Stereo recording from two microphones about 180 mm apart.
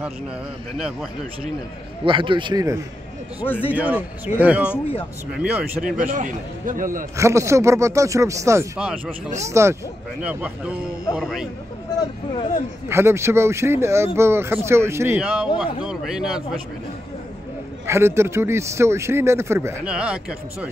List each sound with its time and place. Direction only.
2.0 s a man's voice: 25° right (ahead or behind)
3.7 s speech: 5° right (ahead or behind)
5.9 s a man's voice: 45° right (ahead or behind)
7.2 s speech: 15° right (ahead or behind)
8.7 s speech: 5° right (ahead or behind)
9.5 s speech: 15° right (ahead or behind)
11.1 s speech: centre (ahead or behind)
12.8 s speech: 15° right (ahead or behind)
17.8 s speech: 15° right (ahead or behind)